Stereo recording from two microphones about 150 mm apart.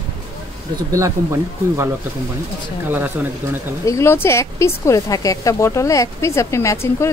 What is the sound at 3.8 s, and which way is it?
Speech, 20° left (ahead or behind).